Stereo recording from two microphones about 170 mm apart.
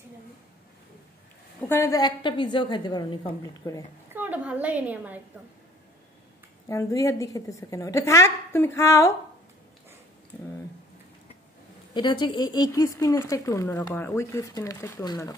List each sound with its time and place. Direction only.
1.6 s speech: 15° left (ahead or behind)
4.1 s a woman's voice: 10° right (ahead or behind)
6.7 s a woman's voice: 20° left (ahead or behind)
11.9 s speech: 25° left (ahead or behind)